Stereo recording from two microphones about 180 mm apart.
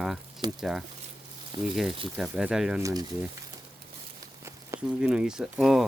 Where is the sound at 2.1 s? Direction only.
Centre (ahead or behind).